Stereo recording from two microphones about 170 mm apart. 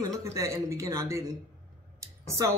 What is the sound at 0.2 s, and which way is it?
Speech, 20° right (ahead or behind).